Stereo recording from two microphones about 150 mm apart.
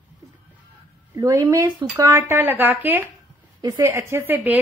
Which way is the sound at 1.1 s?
20° right (ahead or behind).